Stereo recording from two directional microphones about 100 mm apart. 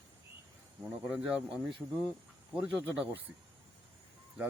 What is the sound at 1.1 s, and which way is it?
Speech, 5° right (ahead or behind).